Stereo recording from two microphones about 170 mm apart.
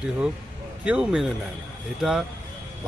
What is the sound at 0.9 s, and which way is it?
Speech, 5° right (ahead or behind).